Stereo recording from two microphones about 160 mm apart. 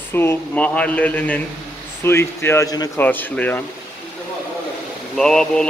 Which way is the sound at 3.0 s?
10° left (ahead or behind).